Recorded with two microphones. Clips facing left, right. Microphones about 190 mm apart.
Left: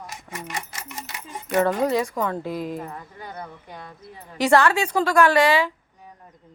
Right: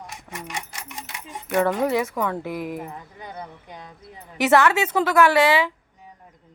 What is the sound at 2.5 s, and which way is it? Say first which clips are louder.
Speech: left 1 dB; 20° left (ahead or behind).